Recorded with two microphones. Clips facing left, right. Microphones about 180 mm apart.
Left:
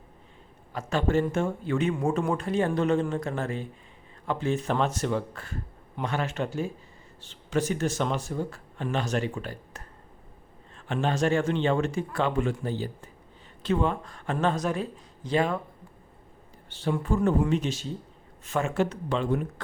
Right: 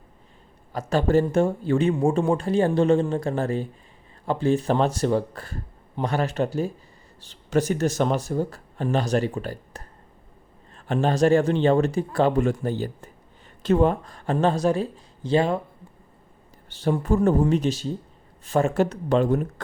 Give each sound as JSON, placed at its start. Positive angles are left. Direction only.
{"t": 0.7, "sound": "speech", "side_deg": -35}
{"t": 16.6, "sound": "speech", "side_deg": -40}